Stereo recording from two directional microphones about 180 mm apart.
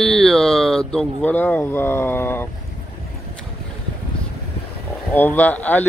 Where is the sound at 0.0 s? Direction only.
Centre (ahead or behind).